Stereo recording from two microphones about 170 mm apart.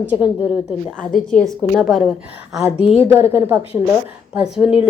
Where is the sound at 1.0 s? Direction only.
5° left (ahead or behind).